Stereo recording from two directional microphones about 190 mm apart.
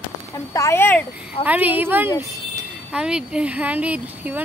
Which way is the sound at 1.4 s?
10° right (ahead or behind).